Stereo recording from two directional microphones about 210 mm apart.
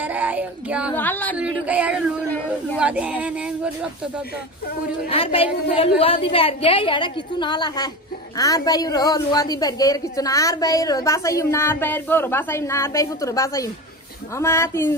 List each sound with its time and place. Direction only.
0.0 s speech: 10° right (ahead or behind)
0.9 s a woman's voice: 10° left (ahead or behind)
1.4 s speech: 5° right (ahead or behind)
2.2 s a woman's voice: 5° left (ahead or behind)
2.8 s speech: 5° right (ahead or behind)
5.1 s a woman's voice: 25° left (ahead or behind)